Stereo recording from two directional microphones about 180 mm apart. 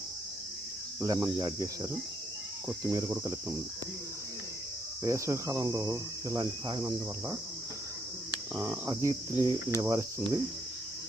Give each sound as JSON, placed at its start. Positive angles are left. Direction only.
{"t": 1.0, "sound": "speech", "side_deg": -20}
{"t": 2.6, "sound": "cricket", "side_deg": -20}
{"t": 5.0, "sound": "cricket", "side_deg": -15}
{"t": 8.5, "sound": "cricket", "side_deg": -10}